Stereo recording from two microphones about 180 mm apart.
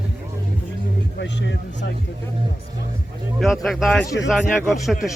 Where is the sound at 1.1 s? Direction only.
80° left.